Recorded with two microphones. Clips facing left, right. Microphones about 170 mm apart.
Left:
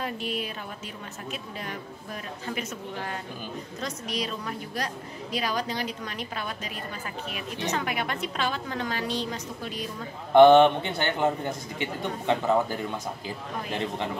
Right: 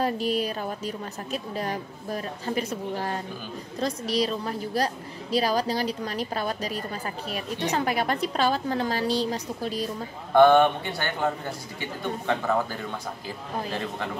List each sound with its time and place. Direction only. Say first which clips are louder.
0.0 s a woman's voice: right 6 dB; 40° right (ahead or behind)
10.3 s speech: left 2 dB; 20° left (ahead or behind)